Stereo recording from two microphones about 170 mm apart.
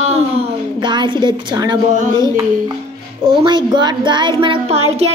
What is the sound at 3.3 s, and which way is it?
Speech, 25° right (ahead or behind).